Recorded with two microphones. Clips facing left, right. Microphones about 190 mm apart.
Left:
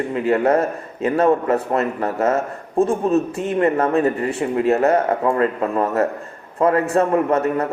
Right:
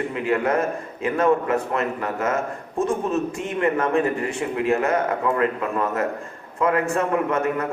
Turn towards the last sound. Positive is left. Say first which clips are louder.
# left 4 dB
turn(degrees=35)  # may be behind; listen again after turning